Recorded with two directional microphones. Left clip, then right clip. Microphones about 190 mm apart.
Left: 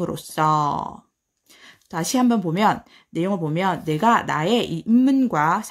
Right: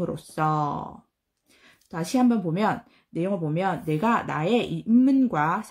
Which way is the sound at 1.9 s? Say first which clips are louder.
Left 3 dB; 35° left (ahead or behind).